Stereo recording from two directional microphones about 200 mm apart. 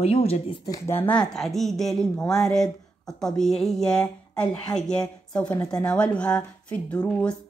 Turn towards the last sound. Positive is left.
turn(degrees=5)  # may be behind; listen again after turning